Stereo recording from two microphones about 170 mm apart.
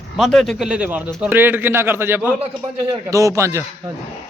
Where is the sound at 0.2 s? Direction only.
Centre (ahead or behind).